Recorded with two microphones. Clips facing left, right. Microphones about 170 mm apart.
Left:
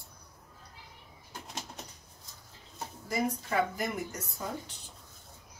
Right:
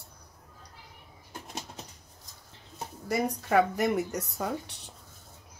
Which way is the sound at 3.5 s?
70° right (ahead or behind).